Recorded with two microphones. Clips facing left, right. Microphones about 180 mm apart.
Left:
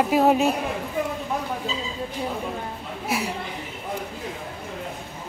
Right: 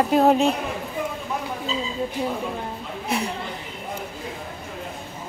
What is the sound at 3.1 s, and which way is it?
Speech, 5° left (ahead or behind).